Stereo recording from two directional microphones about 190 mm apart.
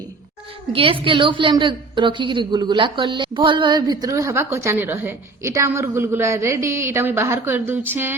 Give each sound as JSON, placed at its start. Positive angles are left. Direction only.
{"t": 0.7, "sound": "a woman's voice", "side_deg": -30}